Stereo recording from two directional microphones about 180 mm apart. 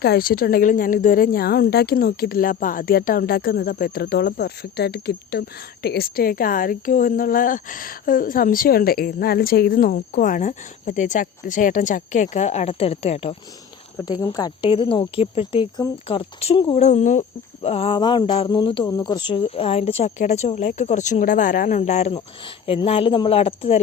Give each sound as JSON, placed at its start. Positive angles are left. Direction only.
{"t": 0.0, "sound": "a woman's voice", "side_deg": 55}
{"t": 14.0, "sound": "a woman's voice", "side_deg": 20}
{"t": 16.8, "sound": "a woman's voice", "side_deg": 40}